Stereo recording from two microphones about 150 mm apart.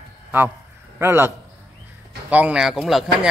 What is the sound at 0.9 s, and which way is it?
A man's voice, 15° right (ahead or behind).